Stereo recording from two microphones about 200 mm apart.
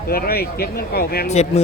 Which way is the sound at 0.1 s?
50° left (ahead or behind).